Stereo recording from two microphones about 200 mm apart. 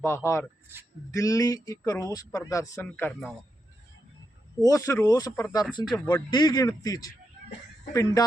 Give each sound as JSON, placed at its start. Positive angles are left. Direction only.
{"t": 0.0, "sound": "speech", "side_deg": 15}
{"t": 4.6, "sound": "speech", "side_deg": 15}